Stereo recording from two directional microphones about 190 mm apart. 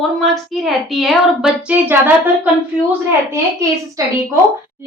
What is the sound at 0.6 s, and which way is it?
A woman's voice, centre (ahead or behind).